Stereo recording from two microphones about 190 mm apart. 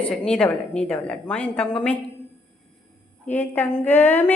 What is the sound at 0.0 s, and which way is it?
A woman's voice, 5° left (ahead or behind).